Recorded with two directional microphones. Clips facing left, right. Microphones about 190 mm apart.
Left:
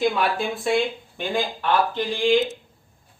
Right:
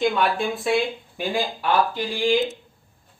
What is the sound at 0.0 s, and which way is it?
Speech, centre (ahead or behind).